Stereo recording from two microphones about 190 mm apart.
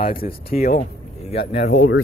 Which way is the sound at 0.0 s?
50° left (ahead or behind).